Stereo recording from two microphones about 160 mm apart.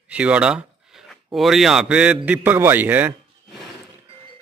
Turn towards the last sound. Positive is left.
turn(degrees=-10)  # may be behind; listen again after turning